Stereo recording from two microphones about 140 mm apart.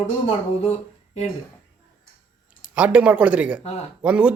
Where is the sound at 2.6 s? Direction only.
10° right (ahead or behind).